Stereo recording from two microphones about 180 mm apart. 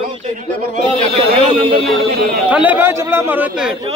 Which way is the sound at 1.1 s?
30° right (ahead or behind).